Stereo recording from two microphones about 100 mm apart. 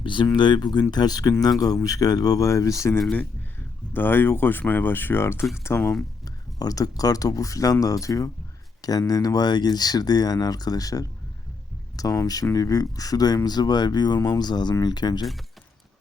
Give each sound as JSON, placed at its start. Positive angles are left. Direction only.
{"t": 0.0, "sound": "speech", "side_deg": 55}
{"t": 3.9, "sound": "speech", "side_deg": 20}